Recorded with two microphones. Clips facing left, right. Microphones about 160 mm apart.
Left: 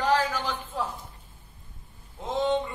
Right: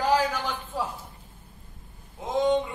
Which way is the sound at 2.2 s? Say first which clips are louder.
Right 2 dB; 15° right (ahead or behind).